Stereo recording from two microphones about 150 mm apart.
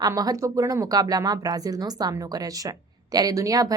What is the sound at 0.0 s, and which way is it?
Speech, 25° right (ahead or behind).